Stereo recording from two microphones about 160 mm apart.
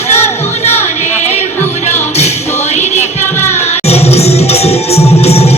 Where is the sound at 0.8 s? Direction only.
45° left (ahead or behind).